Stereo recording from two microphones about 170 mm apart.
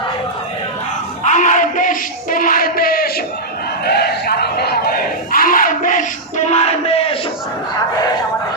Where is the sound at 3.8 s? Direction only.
70° left (ahead or behind); by 7.0 s 35° left (ahead or behind).